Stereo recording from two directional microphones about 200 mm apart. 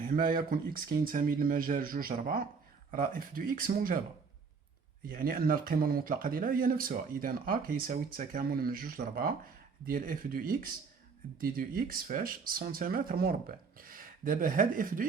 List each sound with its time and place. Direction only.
0.0 s speech: 45° right (ahead or behind)
5.0 s speech: 45° right (ahead or behind)